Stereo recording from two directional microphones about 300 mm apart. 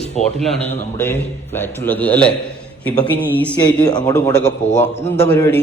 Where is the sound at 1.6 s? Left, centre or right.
Centre.